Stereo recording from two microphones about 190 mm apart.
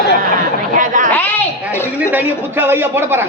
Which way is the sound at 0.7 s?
45° right (ahead or behind).